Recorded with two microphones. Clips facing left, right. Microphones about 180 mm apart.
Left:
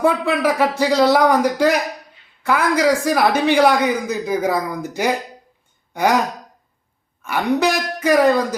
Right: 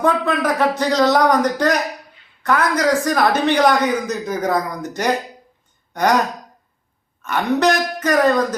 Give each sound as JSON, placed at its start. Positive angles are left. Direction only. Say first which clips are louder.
{"t": 0.0, "sound": "a man's voice", "louder": "left 1 dB", "side_deg": 10}
{"t": 7.2, "sound": "a man's voice", "louder": "even", "side_deg": 10}